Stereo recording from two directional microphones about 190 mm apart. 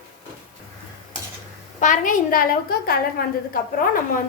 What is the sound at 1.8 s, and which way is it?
A woman's voice, 45° left (ahead or behind).